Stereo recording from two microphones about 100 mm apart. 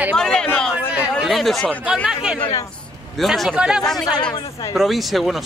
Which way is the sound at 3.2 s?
Centre (ahead or behind).